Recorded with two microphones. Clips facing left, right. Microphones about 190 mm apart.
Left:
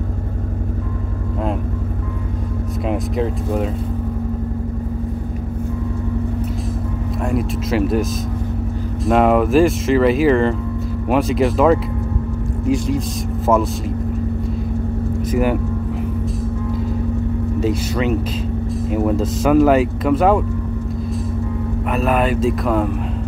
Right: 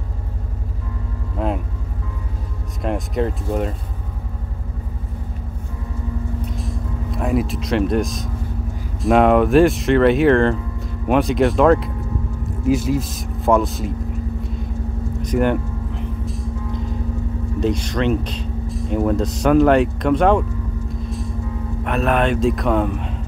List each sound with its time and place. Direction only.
2.8 s speech: centre (ahead or behind)
7.2 s speech: centre (ahead or behind)
15.2 s speech: 5° left (ahead or behind)
17.6 s speech: 5° left (ahead or behind)
21.8 s speech: centre (ahead or behind)